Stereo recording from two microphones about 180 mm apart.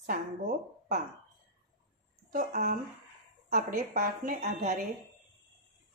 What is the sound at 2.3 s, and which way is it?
A woman's voice, 55° right (ahead or behind).